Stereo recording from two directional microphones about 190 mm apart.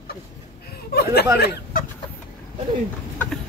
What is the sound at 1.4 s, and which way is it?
Speech, 60° left (ahead or behind).